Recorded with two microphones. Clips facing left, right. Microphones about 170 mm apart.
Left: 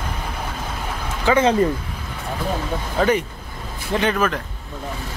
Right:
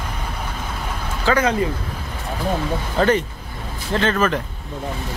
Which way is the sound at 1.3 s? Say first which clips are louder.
Left 2 dB; 25° left (ahead or behind).